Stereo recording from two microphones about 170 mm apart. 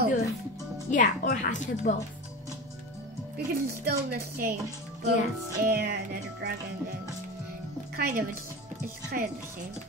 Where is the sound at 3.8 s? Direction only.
65° right (ahead or behind).